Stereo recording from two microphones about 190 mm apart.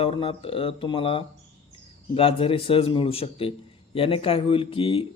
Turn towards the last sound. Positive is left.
turn(degrees=30)  # may be behind; listen again after turning